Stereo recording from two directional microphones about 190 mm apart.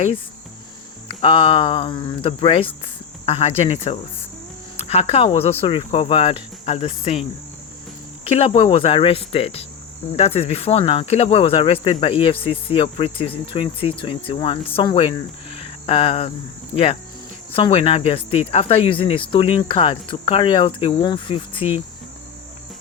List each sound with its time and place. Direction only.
1.0 s speech: 25° left (ahead or behind)
8.3 s speech: 30° left (ahead or behind)
15.5 s cricket: 30° left (ahead or behind)
16.7 s speech: 30° left (ahead or behind)